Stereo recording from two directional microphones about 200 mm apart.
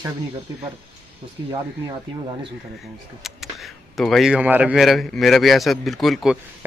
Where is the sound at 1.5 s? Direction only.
20° right (ahead or behind).